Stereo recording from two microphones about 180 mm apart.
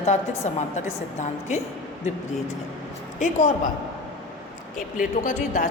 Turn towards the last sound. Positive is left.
turn(degrees=45)  # may be behind; listen again after turning